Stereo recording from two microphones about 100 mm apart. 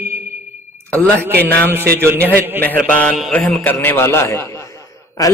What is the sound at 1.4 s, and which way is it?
Mantra, 15° left (ahead or behind).